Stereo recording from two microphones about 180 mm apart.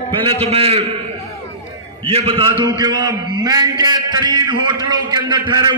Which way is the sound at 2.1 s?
30° right (ahead or behind).